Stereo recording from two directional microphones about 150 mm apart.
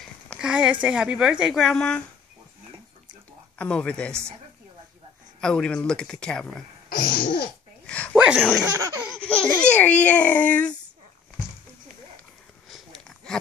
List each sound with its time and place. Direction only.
0.4 s speech: 5° right (ahead or behind)
3.5 s a child's voice: 10° left (ahead or behind)
5.4 s speech: 5° left (ahead or behind)
6.9 s babbling: 80° left
7.8 s a sound: 10° left (ahead or behind)
8.4 s speech: 5° left (ahead or behind)
8.7 s laughter: 20° right (ahead or behind)
9.6 s a child's voice: 10° left (ahead or behind)
12.6 s a sound: centre (ahead or behind)